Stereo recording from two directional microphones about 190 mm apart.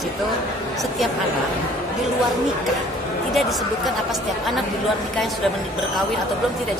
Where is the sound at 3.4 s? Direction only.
Centre (ahead or behind).